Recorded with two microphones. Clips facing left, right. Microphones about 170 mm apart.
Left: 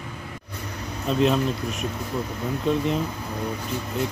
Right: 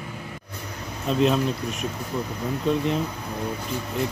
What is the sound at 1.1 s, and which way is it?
Speech, centre (ahead or behind).